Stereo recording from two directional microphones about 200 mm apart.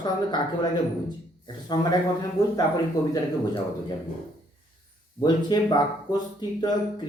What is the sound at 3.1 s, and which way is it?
Speech, 20° left (ahead or behind).